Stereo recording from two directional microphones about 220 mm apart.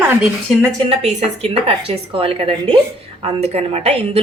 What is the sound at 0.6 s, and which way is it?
A woman's voice, 25° right (ahead or behind).